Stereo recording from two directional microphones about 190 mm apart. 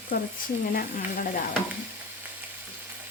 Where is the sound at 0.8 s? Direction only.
45° left (ahead or behind).